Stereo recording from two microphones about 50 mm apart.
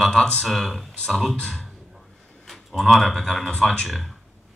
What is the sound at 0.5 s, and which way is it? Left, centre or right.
Speech, centre.